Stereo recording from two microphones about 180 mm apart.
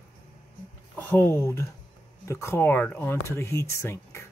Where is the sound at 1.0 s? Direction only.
10° left (ahead or behind).